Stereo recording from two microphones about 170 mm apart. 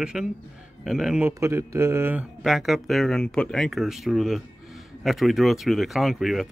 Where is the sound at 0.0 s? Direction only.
5° right (ahead or behind).